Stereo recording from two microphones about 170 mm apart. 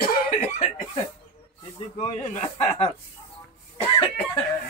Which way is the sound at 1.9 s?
45° left (ahead or behind).